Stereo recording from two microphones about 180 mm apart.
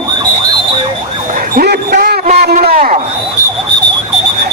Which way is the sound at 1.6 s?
60° right (ahead or behind).